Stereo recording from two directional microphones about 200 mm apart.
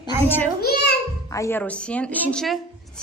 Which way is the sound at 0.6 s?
50° left (ahead or behind).